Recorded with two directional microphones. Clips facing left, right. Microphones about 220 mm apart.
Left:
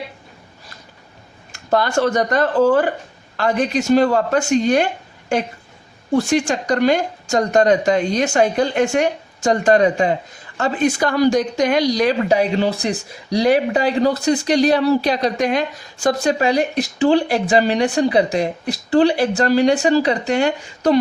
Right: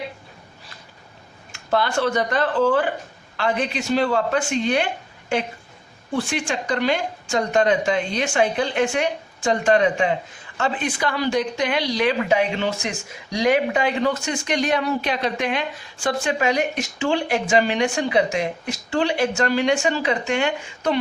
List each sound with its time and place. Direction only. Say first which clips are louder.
1.5 s speech: left 4 dB; 40° left (ahead or behind)
6.1 s speech: left 7 dB; 40° left (ahead or behind)